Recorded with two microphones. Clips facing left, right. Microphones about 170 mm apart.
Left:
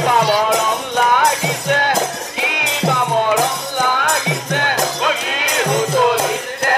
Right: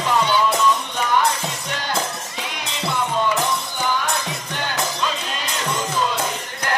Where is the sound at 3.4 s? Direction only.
50° left (ahead or behind).